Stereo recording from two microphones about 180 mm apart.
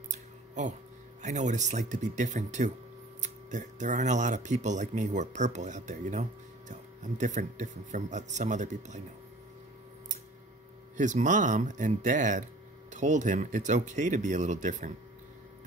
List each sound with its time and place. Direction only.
0.1 s a sound: 40° right (ahead or behind)
1.2 s speech: 40° right (ahead or behind)
11.0 s speech: 45° right (ahead or behind)